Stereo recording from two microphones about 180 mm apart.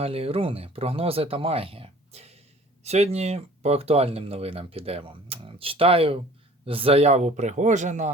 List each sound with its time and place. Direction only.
0.0 s speech: 30° right (ahead or behind)